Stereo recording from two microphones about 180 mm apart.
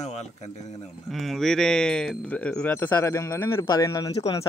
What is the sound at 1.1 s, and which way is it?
Speech, centre (ahead or behind).